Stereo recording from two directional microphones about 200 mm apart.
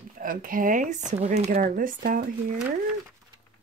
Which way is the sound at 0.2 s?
45° right (ahead or behind).